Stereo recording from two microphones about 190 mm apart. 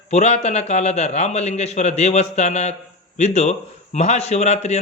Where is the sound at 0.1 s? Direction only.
35° left (ahead or behind).